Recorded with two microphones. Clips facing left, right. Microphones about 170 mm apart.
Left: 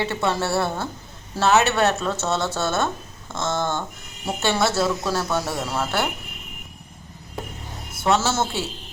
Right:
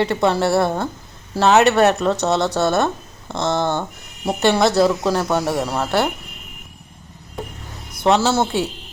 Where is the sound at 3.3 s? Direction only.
65° right (ahead or behind).